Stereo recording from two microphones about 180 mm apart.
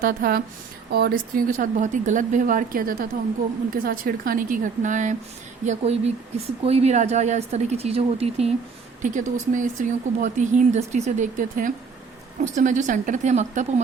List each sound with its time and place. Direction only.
0.0 s a woman's voice: 55° right (ahead or behind); by 8.5 s 35° right (ahead or behind)
9.0 s speech: 45° right (ahead or behind)